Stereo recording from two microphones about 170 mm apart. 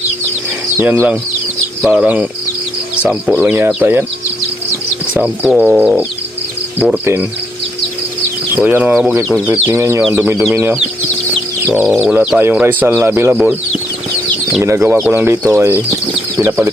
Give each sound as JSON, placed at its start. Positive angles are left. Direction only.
{"t": 0.8, "sound": "speech", "side_deg": -10}
{"t": 5.1, "sound": "speech", "side_deg": -5}
{"t": 8.5, "sound": "speech", "side_deg": -10}
{"t": 14.6, "sound": "speech", "side_deg": -15}